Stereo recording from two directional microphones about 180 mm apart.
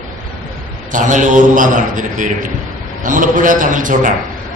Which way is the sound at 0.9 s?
45° right (ahead or behind).